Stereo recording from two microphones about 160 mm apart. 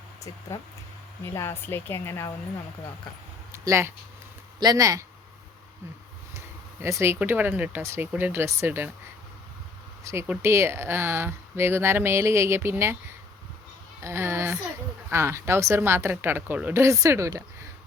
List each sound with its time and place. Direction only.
1.2 s a woman's voice: 15° left (ahead or behind)
3.5 s speech: 20° right (ahead or behind)
6.8 s speech: 15° right (ahead or behind)
10.0 s speech: 15° right (ahead or behind)
14.0 s a sound: 15° right (ahead or behind)
15.1 s speech: 15° right (ahead or behind)